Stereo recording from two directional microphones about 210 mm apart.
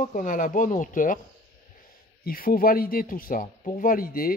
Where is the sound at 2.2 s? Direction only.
45° left (ahead or behind).